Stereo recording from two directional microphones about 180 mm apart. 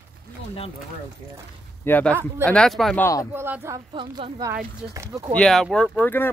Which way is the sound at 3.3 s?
15° right (ahead or behind).